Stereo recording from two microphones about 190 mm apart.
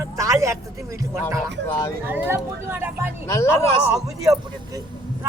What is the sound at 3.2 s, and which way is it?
Speech, 15° left (ahead or behind).